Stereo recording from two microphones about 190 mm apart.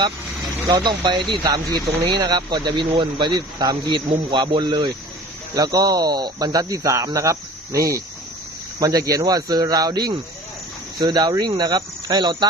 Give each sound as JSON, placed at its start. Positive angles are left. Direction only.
{"t": 0.7, "sound": "speech", "side_deg": -25}